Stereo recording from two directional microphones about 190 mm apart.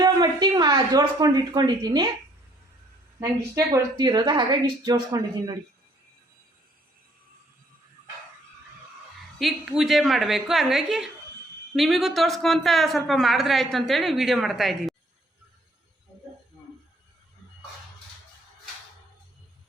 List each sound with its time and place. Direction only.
0.0 s a woman's voice: 20° right (ahead or behind)
3.2 s a woman's voice: 15° right (ahead or behind)
9.4 s a woman's voice: centre (ahead or behind)